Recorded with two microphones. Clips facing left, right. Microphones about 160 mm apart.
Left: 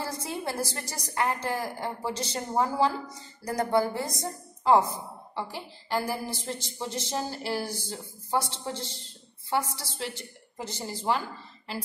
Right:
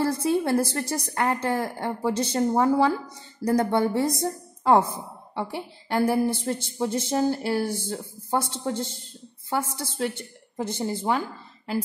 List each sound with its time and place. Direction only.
0.0 s a woman's voice: 60° right (ahead or behind)